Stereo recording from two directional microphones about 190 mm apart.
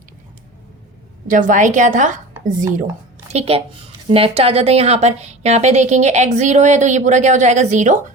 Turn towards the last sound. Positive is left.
turn(degrees=-40)  # may be behind; listen again after turning